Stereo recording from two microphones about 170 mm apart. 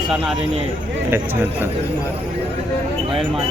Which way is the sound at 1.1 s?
10° right (ahead or behind).